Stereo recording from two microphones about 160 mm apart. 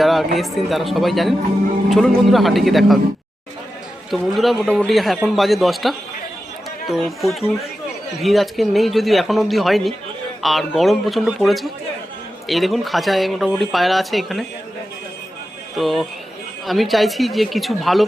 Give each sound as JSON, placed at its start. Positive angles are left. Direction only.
{"t": 0.0, "sound": "speech", "side_deg": 0}
{"t": 4.1, "sound": "speech", "side_deg": 0}
{"t": 15.7, "sound": "speech", "side_deg": 0}